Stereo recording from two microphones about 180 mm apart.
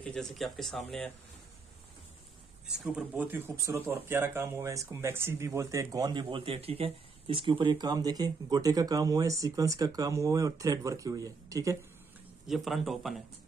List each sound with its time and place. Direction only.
0.0 s speech: 5° left (ahead or behind)
2.7 s speech: 5° right (ahead or behind)
12.4 s speech: centre (ahead or behind)